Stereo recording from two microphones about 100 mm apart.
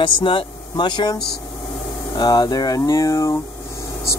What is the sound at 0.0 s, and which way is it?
Speech, 55° left (ahead or behind).